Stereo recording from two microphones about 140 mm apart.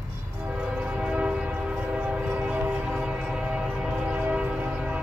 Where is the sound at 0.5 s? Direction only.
10° right (ahead or behind).